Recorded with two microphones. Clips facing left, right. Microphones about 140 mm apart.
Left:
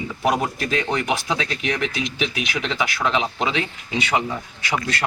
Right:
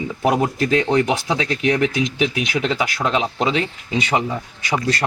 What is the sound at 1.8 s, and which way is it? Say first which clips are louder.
Speech: right 6 dB; 40° right (ahead or behind).